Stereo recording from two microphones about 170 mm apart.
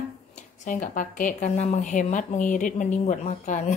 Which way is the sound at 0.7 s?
50° left (ahead or behind).